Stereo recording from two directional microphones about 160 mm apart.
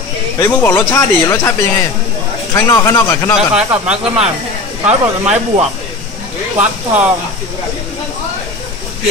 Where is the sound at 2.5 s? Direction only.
20° left (ahead or behind).